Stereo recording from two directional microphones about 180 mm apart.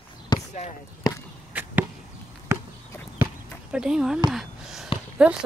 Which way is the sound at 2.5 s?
15° right (ahead or behind).